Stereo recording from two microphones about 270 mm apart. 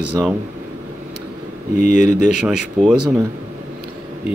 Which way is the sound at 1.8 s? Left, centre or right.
Left.